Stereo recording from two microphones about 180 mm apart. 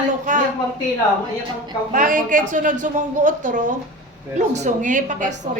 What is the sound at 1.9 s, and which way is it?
A man's voice, 45° right (ahead or behind).